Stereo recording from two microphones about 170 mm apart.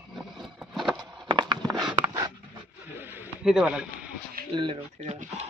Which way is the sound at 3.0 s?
10° right (ahead or behind).